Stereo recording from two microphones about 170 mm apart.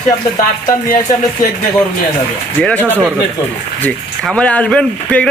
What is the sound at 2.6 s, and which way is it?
A man's voice, 5° left (ahead or behind).